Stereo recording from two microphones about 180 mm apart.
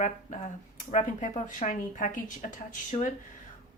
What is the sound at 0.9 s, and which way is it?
Speech, 45° left (ahead or behind).